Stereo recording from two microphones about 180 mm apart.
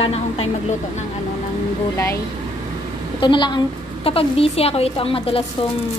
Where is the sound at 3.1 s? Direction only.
25° left (ahead or behind).